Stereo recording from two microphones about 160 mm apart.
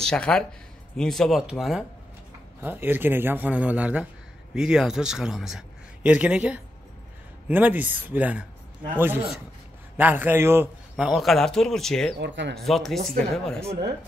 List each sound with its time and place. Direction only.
0.0 s speech: 5° left (ahead or behind); by 11.1 s 15° right (ahead or behind)
11.1 s speech: centre (ahead or behind)
12.2 s speech: 90° right
12.5 s speech: centre (ahead or behind)